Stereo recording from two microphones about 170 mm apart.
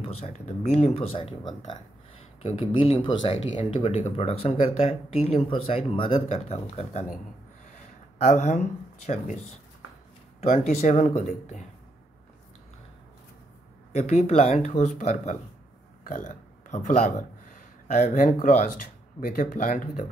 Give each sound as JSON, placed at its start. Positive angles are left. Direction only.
{"t": 0.0, "sound": "speech", "side_deg": 40}
{"t": 8.2, "sound": "speech", "side_deg": 45}
{"t": 13.9, "sound": "speech", "side_deg": 40}